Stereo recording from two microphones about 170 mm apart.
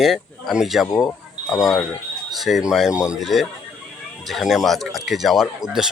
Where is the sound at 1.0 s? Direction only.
Centre (ahead or behind).